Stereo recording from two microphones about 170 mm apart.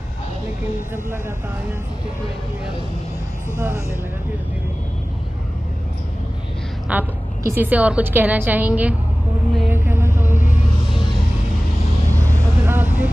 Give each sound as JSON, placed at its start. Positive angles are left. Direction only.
{"t": 3.5, "sound": "a woman's voice", "side_deg": -15}
{"t": 6.9, "sound": "a woman's voice", "side_deg": -10}
{"t": 9.6, "sound": "music", "side_deg": -10}
{"t": 10.9, "sound": "music", "side_deg": -5}
{"t": 12.4, "sound": "vehicle", "side_deg": -10}